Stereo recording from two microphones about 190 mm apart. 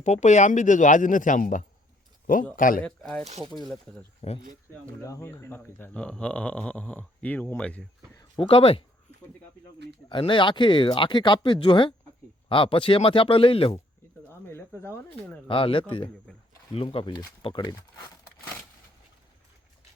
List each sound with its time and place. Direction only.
0.0 s speech: 40° left (ahead or behind)
2.8 s speech: 5° left (ahead or behind)
3.2 s speech: 35° right (ahead or behind)
4.2 s speech: 35° left (ahead or behind)
4.7 s speech: 15° left (ahead or behind)
8.4 s speech: 30° left (ahead or behind)
10.1 s speech: 25° left (ahead or behind)
15.4 s speech: 25° left (ahead or behind)